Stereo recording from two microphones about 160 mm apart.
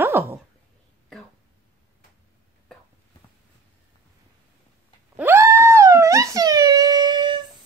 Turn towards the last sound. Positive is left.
turn(degrees=-25)  # may be behind; listen again after turning